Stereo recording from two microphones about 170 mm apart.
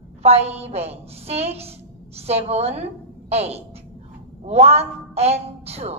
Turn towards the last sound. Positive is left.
turn(degrees=-40)  # may be behind; listen again after turning